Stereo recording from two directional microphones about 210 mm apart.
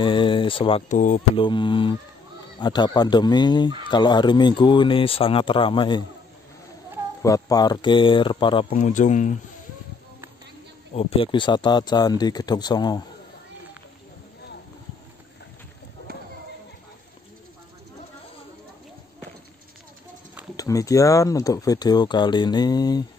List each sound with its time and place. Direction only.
0.0 s speech: 25° left (ahead or behind)
1.4 s speech: 20° left (ahead or behind)
7.2 s speech: 15° left (ahead or behind)
8.6 s speech: 35° left (ahead or behind)
11.0 s speech: 25° left (ahead or behind)
20.5 s speech: 15° left (ahead or behind)